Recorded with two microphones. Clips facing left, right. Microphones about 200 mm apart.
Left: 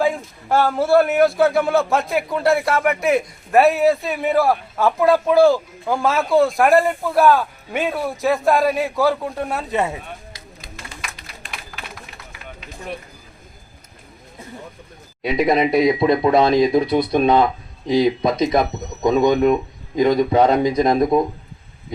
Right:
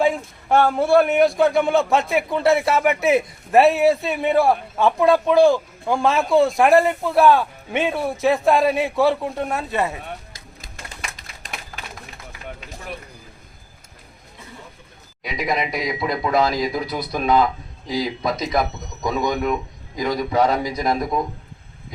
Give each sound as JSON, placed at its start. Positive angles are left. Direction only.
{"t": 0.0, "sound": "a man's voice", "side_deg": 0}
{"t": 15.2, "sound": "speech", "side_deg": 25}